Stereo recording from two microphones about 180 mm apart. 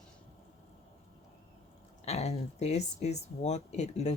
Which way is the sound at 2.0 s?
35° left (ahead or behind).